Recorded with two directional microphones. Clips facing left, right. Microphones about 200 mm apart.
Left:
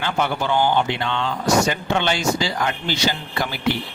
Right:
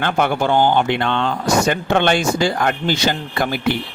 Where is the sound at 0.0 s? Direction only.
55° right (ahead or behind).